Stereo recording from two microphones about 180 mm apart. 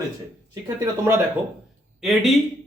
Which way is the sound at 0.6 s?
15° right (ahead or behind).